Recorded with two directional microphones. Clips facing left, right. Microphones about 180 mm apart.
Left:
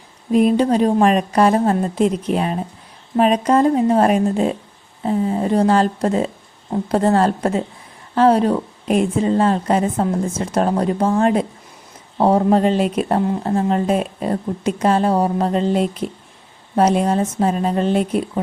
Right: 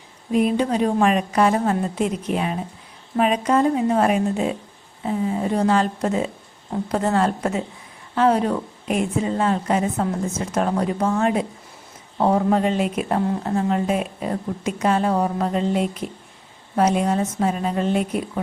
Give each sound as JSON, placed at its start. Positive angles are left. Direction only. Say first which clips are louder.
{"t": 0.3, "sound": "speech", "louder": "left 5 dB", "side_deg": 40}